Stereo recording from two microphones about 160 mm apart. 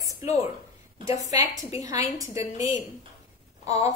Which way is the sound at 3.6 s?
45° left (ahead or behind).